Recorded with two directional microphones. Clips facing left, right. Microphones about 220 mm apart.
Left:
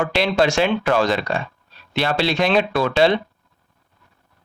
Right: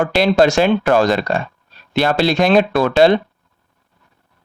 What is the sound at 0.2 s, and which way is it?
Speech, 40° right (ahead or behind).